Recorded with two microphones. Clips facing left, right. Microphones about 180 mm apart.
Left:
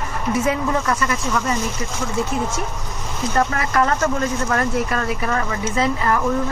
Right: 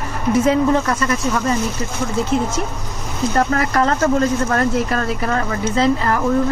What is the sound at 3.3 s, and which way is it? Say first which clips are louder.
Speech: right 2 dB; 35° right (ahead or behind).